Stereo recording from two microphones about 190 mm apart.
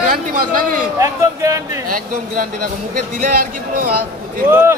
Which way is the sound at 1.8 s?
45° right (ahead or behind).